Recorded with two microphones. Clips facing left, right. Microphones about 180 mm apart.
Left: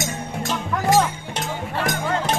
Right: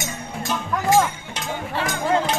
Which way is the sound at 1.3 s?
60° left (ahead or behind).